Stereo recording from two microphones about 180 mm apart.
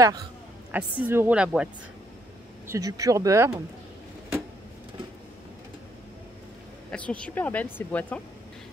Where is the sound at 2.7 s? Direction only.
20° right (ahead or behind).